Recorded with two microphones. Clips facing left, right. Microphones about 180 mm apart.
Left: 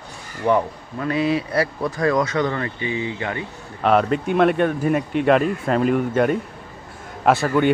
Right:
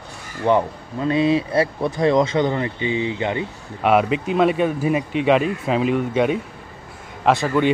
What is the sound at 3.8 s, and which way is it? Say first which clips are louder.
Speech: even; 5° right (ahead or behind).